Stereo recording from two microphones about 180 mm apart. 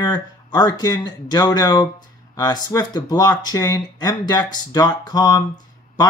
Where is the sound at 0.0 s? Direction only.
20° left (ahead or behind).